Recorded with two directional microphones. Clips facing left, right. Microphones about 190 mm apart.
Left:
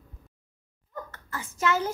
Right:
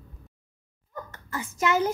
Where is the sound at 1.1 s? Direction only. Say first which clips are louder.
Right 4 dB; 15° right (ahead or behind).